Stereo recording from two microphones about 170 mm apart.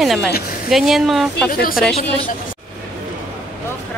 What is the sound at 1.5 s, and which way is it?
Speech, 60° left (ahead or behind).